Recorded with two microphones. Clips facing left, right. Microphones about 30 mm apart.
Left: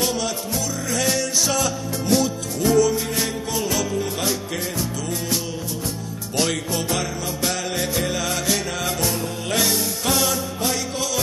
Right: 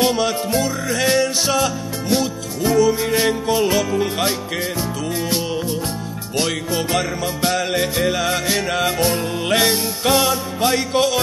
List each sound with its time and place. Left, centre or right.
0.0 s music: right
2.6 s music: centre
2.9 s music: right
6.3 s music: centre
7.0 s music: right
7.7 s music: centre
10.9 s music: right